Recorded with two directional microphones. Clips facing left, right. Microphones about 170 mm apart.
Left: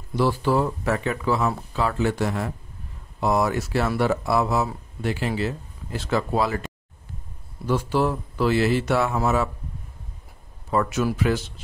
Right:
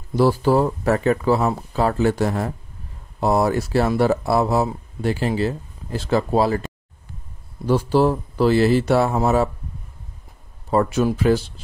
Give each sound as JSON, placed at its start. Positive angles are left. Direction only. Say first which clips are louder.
{"t": 0.1, "sound": "speech", "louder": "right 5 dB", "side_deg": -40}
{"t": 7.6, "sound": "speech", "louder": "right 5 dB", "side_deg": -35}
{"t": 10.7, "sound": "speech", "louder": "right 4 dB", "side_deg": -30}